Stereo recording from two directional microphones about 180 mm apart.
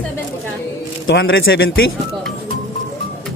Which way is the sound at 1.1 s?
70° left (ahead or behind).